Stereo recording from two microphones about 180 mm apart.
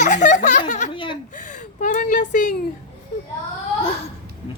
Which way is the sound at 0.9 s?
25° left (ahead or behind).